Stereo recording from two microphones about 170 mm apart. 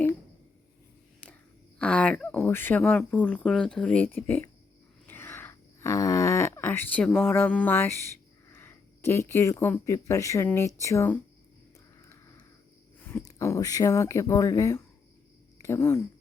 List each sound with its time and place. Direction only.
1.8 s speech: 5° left (ahead or behind)
5.0 s groan: 15° left (ahead or behind)
8.5 s speech: 15° left (ahead or behind)
13.0 s speech: 10° left (ahead or behind)